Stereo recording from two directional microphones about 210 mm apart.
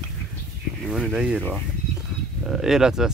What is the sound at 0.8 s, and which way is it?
Speech, centre (ahead or behind).